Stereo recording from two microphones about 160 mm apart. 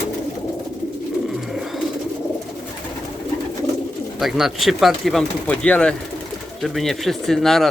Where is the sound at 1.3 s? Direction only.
Centre (ahead or behind).